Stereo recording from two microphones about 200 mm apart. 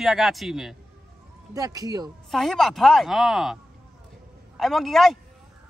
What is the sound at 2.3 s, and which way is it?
A man's voice, centre (ahead or behind).